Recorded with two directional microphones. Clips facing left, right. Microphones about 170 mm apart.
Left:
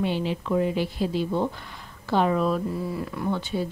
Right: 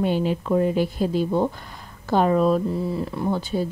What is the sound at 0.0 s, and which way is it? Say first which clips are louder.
A woman's voice: right 4 dB; 45° right (ahead or behind).